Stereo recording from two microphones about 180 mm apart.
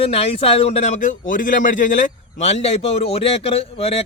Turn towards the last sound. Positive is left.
turn(degrees=35)  # may be behind; listen again after turning